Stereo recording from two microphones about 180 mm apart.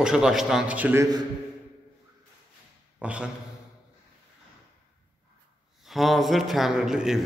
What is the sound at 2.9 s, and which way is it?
Speech, 5° right (ahead or behind).